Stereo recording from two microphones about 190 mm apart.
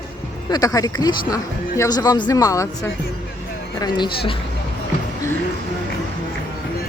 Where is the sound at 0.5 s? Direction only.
20° left (ahead or behind).